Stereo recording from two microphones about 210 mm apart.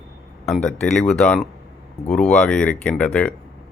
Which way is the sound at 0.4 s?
5° left (ahead or behind).